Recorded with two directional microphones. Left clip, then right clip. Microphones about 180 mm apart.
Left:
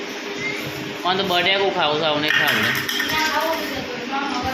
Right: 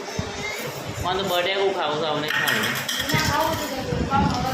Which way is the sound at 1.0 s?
25° left (ahead or behind).